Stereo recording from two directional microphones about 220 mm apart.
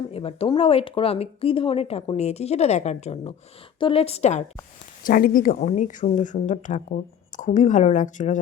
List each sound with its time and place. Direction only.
0.1 s a woman's voice: 25° left (ahead or behind)